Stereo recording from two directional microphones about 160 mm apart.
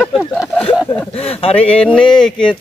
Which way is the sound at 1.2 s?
35° left (ahead or behind).